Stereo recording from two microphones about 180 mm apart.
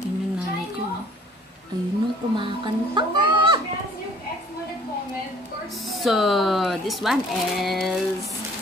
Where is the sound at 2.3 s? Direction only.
25° right (ahead or behind).